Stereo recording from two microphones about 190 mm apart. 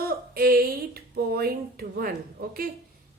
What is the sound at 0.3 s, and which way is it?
A woman's voice, 50° right (ahead or behind).